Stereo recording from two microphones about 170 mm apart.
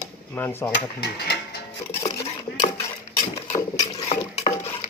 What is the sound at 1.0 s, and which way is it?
Speech, 70° left (ahead or behind).